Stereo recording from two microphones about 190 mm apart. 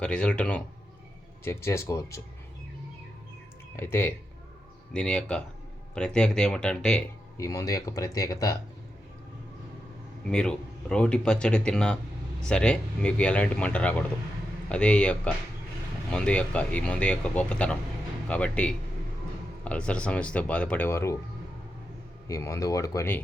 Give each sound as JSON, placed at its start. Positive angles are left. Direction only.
{"t": 0.0, "sound": "speech", "side_deg": 5}
{"t": 3.8, "sound": "speech", "side_deg": 10}
{"t": 7.3, "sound": "speech", "side_deg": 15}
{"t": 10.2, "sound": "speech", "side_deg": 5}
{"t": 22.3, "sound": "speech", "side_deg": 15}